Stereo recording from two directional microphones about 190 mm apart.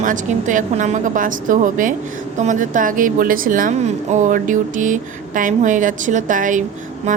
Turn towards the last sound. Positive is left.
turn(degrees=-45)  # may be behind; listen again after turning